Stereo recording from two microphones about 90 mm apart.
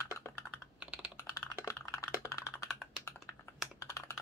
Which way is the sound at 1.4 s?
35° left (ahead or behind).